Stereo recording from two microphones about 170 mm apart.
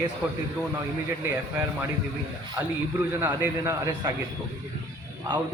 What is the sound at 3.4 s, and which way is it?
Speech, 20° right (ahead or behind).